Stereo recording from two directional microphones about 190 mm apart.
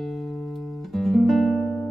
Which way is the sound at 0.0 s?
Centre (ahead or behind).